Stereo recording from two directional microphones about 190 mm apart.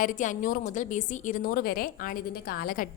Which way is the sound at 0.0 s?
45° left (ahead or behind).